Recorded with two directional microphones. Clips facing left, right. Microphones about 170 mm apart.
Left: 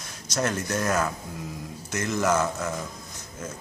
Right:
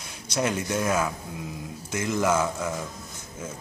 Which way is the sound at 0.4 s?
10° right (ahead or behind).